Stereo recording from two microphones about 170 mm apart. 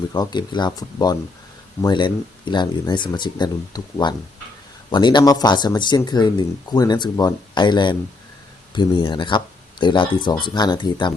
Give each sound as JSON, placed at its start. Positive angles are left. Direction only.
{"t": 0.1, "sound": "speech", "side_deg": 25}